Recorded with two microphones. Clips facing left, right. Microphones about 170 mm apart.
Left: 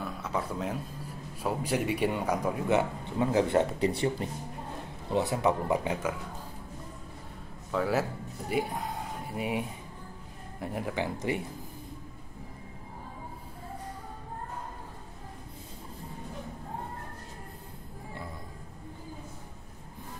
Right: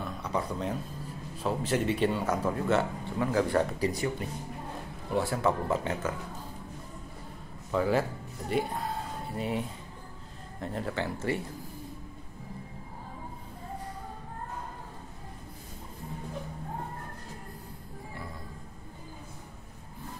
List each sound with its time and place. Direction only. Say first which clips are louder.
0.0 s a sound: right 1 dB; 5° left (ahead or behind)
1.3 s speech: right 1 dB; 10° left (ahead or behind)
7.7 s speech: right 2 dB; centre (ahead or behind)
8.5 s speech: right 1 dB; 15° left (ahead or behind)